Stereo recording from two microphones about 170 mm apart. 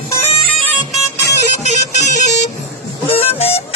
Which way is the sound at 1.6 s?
45° left (ahead or behind).